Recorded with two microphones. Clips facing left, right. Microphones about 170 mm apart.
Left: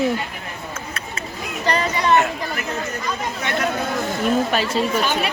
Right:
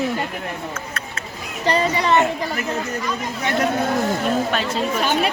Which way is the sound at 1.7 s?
25° right (ahead or behind).